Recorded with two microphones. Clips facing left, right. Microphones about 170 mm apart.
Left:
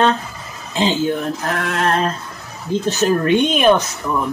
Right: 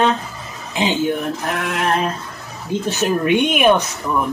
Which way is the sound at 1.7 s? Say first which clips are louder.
Left 1 dB; 15° right (ahead or behind).